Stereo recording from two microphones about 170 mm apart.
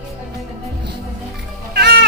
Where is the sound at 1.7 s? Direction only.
70° right (ahead or behind).